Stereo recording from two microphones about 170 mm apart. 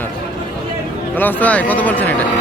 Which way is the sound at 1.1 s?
10° left (ahead or behind).